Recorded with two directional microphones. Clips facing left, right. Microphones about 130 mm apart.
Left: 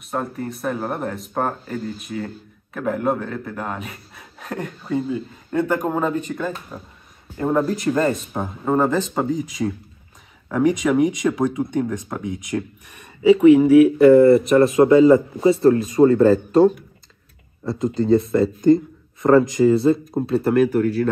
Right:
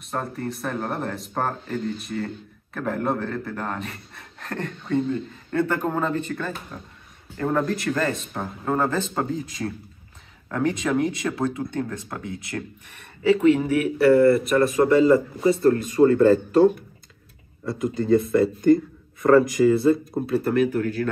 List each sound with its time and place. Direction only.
0.0 s speech: centre (ahead or behind); by 15.5 s 25° left (ahead or behind)
16.0 s speech: 35° left (ahead or behind)
17.6 s speech: 25° left (ahead or behind)
20.5 s speech: 40° left (ahead or behind)